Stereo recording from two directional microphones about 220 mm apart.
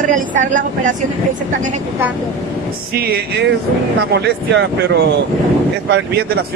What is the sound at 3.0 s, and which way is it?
Speech, 45° right (ahead or behind).